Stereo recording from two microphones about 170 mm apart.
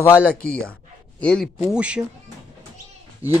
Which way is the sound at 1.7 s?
5° right (ahead or behind).